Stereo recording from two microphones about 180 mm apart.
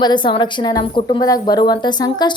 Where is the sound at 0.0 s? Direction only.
25° left (ahead or behind).